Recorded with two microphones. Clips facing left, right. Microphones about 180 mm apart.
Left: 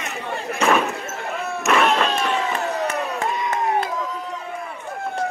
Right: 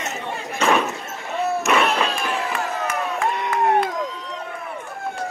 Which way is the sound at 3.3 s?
60° right (ahead or behind).